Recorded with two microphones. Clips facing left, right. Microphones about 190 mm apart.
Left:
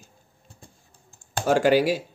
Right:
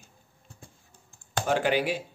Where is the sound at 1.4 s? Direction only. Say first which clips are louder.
Left 7 dB; 40° left (ahead or behind).